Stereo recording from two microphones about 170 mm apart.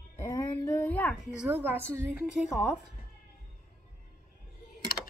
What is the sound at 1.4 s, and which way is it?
Speech, 10° right (ahead or behind).